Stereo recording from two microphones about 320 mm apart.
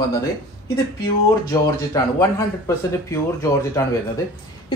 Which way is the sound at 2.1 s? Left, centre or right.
Centre.